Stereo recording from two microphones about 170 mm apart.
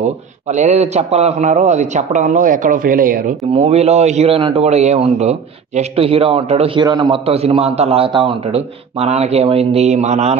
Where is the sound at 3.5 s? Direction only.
35° right (ahead or behind).